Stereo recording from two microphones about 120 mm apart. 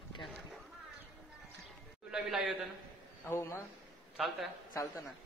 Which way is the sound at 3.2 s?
20° left (ahead or behind).